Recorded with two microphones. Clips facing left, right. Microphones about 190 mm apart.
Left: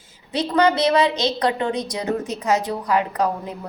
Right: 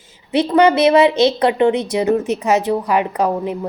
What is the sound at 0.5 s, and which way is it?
A woman's voice, 25° right (ahead or behind).